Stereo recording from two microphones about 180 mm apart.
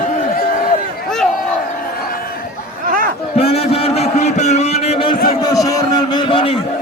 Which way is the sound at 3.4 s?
35° left (ahead or behind).